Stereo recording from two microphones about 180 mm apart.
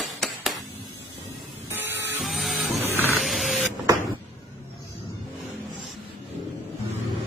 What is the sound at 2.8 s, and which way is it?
Music, 15° right (ahead or behind).